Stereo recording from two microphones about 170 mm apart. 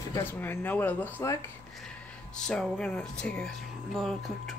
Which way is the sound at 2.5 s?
5° left (ahead or behind).